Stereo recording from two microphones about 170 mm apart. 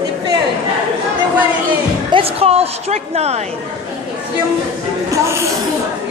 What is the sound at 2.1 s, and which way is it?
A woman's voice, 35° right (ahead or behind).